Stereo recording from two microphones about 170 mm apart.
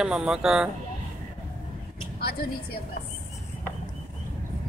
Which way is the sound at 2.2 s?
65° left (ahead or behind).